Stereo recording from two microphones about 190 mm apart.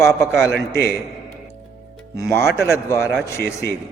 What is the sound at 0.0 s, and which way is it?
Speech, 15° left (ahead or behind).